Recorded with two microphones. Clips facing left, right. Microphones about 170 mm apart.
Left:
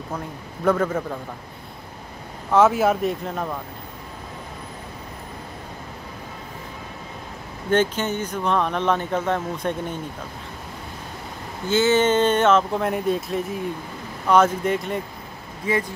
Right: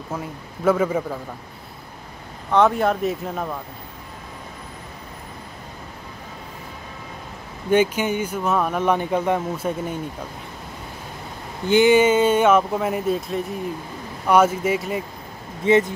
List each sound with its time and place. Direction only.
0.7 s speech: 10° right (ahead or behind)
2.5 s speech: 5° left (ahead or behind)
7.7 s speech: 10° right (ahead or behind)
11.6 s speech: 15° right (ahead or behind)
15.6 s speech: 25° right (ahead or behind)